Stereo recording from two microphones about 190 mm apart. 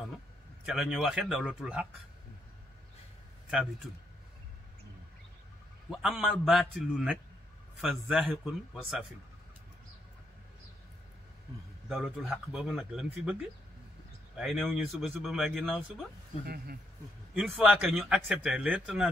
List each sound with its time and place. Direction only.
0.7 s speech: centre (ahead or behind)
5.9 s speech: centre (ahead or behind)
11.9 s speech: 5° right (ahead or behind)
16.4 s speech: 55° right (ahead or behind)
17.3 s speech: 5° right (ahead or behind)